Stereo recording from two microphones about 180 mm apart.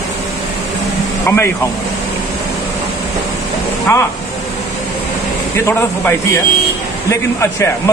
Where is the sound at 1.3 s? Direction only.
15° left (ahead or behind).